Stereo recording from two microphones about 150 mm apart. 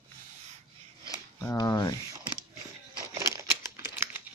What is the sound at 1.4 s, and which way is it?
Speech, 25° left (ahead or behind).